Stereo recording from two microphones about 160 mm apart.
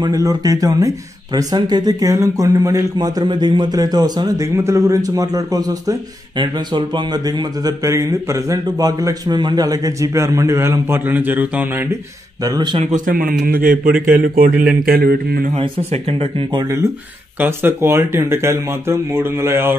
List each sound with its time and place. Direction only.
0.0 s speech: 20° right (ahead or behind)
12.4 s speech: 30° right (ahead or behind)
12.8 s a man's voice: 55° right (ahead or behind); by 15.5 s 75° right (ahead or behind)
15.5 s speech: 40° right (ahead or behind)
17.4 s speech: 15° right (ahead or behind)